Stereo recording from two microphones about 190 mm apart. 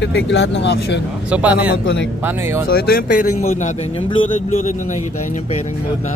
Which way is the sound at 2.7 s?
55° left (ahead or behind).